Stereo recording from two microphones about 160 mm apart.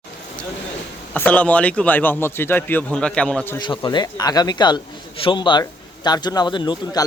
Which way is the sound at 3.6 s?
30° left (ahead or behind).